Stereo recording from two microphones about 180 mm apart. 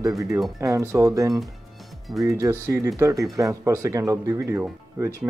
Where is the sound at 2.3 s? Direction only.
15° right (ahead or behind).